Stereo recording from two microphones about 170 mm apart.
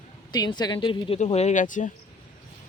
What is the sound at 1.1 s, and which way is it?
Speech, 40° left (ahead or behind).